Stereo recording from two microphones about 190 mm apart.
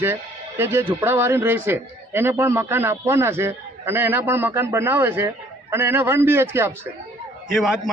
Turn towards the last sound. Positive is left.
turn(degrees=0)  # may be behind; listen again after turning